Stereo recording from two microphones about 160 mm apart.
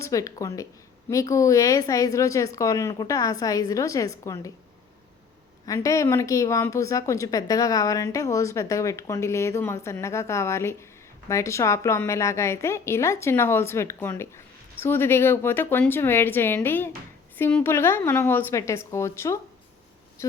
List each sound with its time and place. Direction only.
0.0 s a woman's voice: 20° left (ahead or behind)
5.6 s a woman's voice: 20° left (ahead or behind)